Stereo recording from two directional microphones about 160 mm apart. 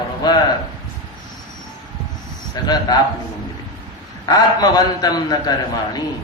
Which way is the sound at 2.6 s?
25° left (ahead or behind).